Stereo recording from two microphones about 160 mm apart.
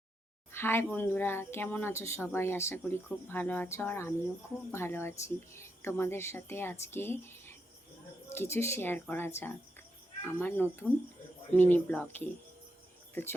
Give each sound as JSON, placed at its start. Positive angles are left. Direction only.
{"t": 0.5, "sound": "speech", "side_deg": 15}